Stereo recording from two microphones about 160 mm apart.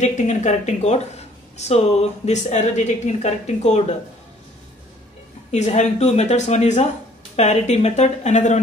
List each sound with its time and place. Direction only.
0.0 s speech: 45° left (ahead or behind)
5.5 s speech: 45° left (ahead or behind)